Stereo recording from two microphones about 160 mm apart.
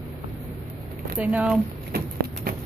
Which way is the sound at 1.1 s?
5° right (ahead or behind).